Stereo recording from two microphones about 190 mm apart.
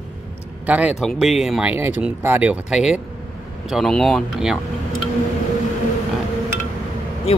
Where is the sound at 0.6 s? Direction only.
5° right (ahead or behind).